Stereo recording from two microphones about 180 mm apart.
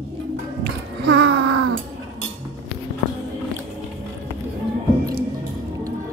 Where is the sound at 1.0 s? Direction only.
70° right (ahead or behind).